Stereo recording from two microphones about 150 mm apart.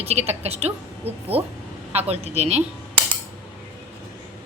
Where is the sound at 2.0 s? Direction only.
45° right (ahead or behind).